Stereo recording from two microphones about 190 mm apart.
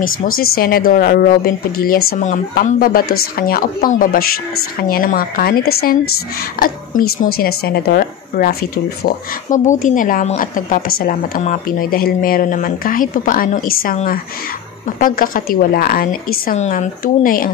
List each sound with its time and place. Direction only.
0.4 s a woman's voice: 50° left (ahead or behind)